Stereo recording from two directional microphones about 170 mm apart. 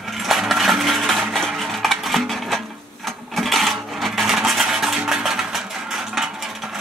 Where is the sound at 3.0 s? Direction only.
Centre (ahead or behind).